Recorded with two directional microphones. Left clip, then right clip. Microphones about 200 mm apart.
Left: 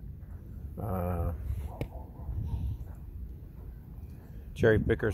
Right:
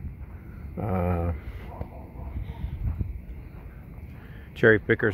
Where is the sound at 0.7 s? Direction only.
25° right (ahead or behind).